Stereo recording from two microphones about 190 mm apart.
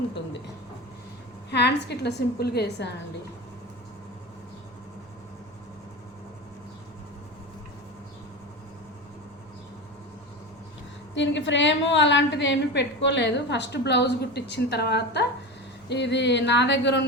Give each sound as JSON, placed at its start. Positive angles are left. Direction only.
{"t": 1.5, "sound": "a woman's voice", "side_deg": 65}
{"t": 11.1, "sound": "a woman's voice", "side_deg": 75}